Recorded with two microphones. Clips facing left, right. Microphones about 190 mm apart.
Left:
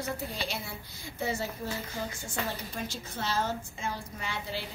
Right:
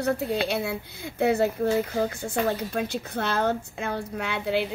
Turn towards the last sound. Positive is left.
turn(degrees=-65)  # may be behind; listen again after turning